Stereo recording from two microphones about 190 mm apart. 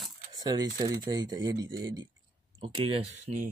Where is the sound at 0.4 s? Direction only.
20° right (ahead or behind).